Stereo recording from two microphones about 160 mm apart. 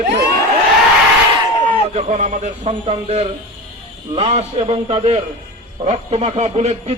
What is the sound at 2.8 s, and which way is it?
A man's voice, 40° right (ahead or behind).